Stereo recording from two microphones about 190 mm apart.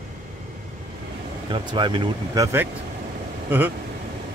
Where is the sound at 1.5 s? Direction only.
25° right (ahead or behind).